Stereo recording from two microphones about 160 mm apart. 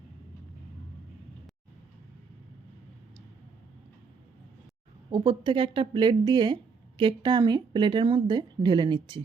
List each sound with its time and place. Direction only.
5.1 s speech: 30° right (ahead or behind)